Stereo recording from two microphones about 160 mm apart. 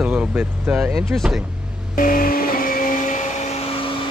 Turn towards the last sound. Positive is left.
turn(degrees=55)  # may be behind; listen again after turning